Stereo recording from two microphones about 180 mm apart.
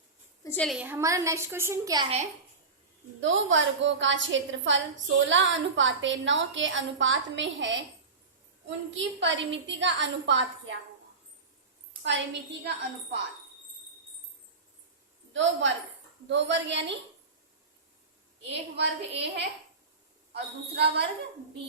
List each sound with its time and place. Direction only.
0.4 s a woman's voice: 5° left (ahead or behind)
0.8 s a woman's voice: 10° right (ahead or behind)
3.2 s a woman's voice: 90° right
12.0 s a woman's voice: 80° right
15.3 s a woman's voice: 90° right
19.1 s a woman's voice: 70° right (ahead or behind)